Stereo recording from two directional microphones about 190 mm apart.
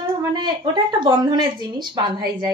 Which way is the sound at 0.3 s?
25° right (ahead or behind).